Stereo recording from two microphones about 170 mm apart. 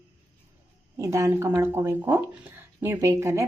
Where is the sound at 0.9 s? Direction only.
20° right (ahead or behind).